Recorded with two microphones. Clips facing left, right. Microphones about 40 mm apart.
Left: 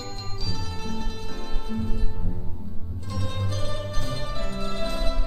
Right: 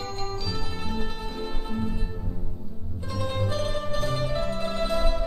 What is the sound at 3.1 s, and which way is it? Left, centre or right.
Music, centre.